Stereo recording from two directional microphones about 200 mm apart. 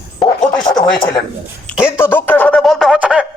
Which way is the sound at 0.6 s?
20° left (ahead or behind).